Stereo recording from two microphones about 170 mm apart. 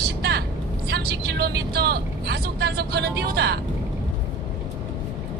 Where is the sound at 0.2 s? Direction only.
70° right (ahead or behind).